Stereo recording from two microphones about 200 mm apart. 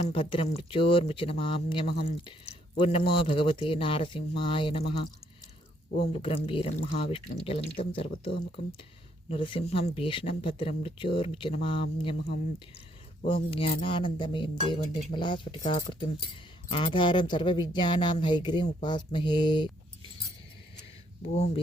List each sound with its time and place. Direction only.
0.0 s speech: 25° left (ahead or behind)
6.1 s speech: 30° left (ahead or behind)
13.2 s speech: 25° left (ahead or behind)
21.3 s speech: 30° left (ahead or behind)